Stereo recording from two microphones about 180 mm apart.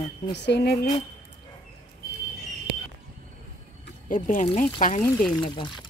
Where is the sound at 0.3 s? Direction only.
70° left (ahead or behind).